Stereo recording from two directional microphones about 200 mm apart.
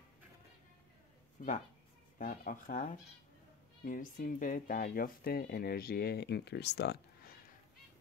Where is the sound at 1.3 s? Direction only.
40° left (ahead or behind); by 7.3 s 55° left (ahead or behind).